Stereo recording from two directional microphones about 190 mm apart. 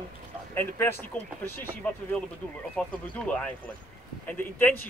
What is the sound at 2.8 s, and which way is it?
Speech, 5° left (ahead or behind).